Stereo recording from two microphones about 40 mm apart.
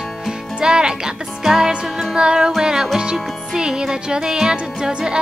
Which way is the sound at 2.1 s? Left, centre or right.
Centre.